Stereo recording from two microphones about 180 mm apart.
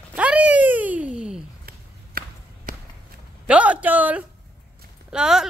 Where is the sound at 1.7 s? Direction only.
55° right (ahead or behind).